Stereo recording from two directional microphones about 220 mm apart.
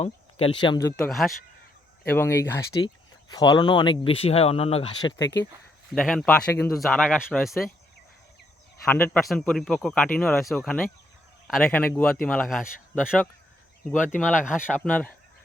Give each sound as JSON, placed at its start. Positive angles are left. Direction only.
{"t": 0.0, "sound": "speech", "side_deg": 25}
{"t": 0.9, "sound": "speech", "side_deg": 0}
{"t": 2.0, "sound": "speech", "side_deg": 10}
{"t": 5.9, "sound": "speech", "side_deg": 0}
{"t": 8.8, "sound": "speech", "side_deg": 10}
{"t": 13.9, "sound": "speech", "side_deg": 35}